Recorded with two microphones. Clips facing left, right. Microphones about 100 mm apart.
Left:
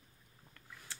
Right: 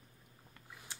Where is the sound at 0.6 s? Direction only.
15° right (ahead or behind).